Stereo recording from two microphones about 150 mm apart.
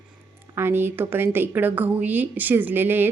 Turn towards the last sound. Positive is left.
turn(degrees=-15)  # may be behind; listen again after turning